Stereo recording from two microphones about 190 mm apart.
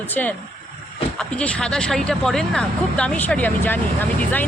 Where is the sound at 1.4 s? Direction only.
5° left (ahead or behind).